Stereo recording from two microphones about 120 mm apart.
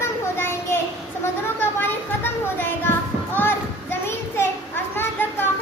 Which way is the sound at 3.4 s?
20° left (ahead or behind).